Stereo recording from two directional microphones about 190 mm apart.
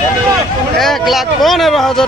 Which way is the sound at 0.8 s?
Centre (ahead or behind).